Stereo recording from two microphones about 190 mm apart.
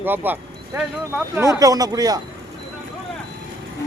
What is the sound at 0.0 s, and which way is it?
Speech, 10° right (ahead or behind).